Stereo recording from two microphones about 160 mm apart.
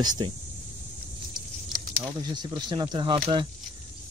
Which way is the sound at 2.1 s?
25° right (ahead or behind).